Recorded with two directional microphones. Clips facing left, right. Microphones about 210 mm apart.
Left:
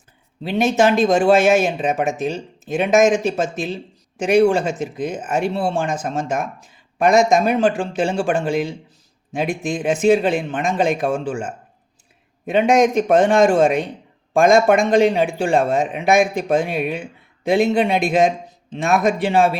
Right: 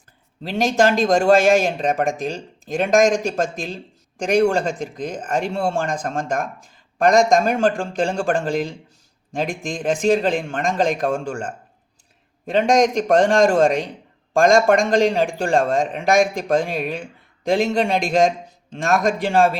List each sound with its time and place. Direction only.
0.5 s a man's voice: 5° left (ahead or behind)